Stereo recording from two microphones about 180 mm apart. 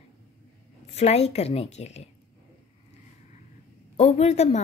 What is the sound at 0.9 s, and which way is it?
A woman's voice, 35° left (ahead or behind).